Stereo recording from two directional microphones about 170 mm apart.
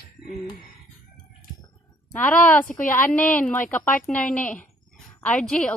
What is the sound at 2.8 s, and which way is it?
Speech, 50° left (ahead or behind).